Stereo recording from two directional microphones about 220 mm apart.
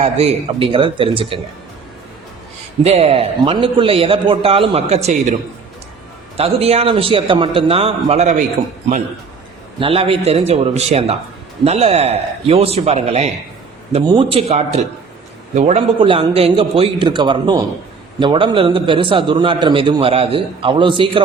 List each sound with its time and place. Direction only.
0.0 s a man's voice: 25° right (ahead or behind)
2.8 s a man's voice: 25° right (ahead or behind)
9.8 s a man's voice: 25° right (ahead or behind)